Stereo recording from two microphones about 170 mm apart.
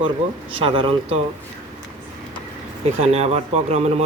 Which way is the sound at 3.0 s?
40° right (ahead or behind).